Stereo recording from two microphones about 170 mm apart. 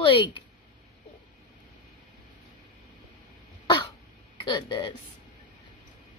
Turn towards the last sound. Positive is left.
turn(degrees=25)  # may be behind; listen again after turning